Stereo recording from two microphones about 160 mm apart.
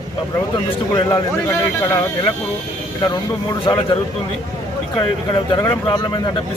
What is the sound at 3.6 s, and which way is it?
A man's voice, 30° left (ahead or behind).